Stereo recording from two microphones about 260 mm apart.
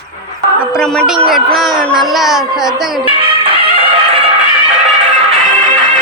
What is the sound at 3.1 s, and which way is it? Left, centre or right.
Music, centre.